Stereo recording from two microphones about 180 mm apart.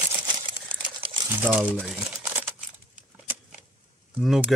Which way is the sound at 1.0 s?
25° right (ahead or behind).